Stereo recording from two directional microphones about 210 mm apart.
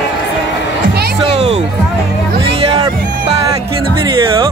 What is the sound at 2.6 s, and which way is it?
Music, 25° right (ahead or behind).